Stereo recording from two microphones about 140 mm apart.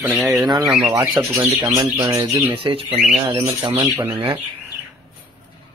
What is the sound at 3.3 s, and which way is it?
Speech, 20° right (ahead or behind).